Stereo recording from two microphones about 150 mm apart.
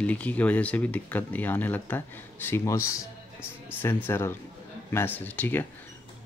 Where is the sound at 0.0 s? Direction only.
10° left (ahead or behind).